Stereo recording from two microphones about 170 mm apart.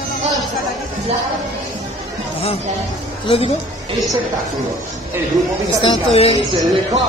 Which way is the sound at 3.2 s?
35° left (ahead or behind).